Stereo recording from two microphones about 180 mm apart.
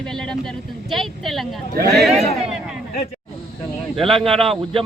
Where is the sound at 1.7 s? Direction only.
60° right (ahead or behind).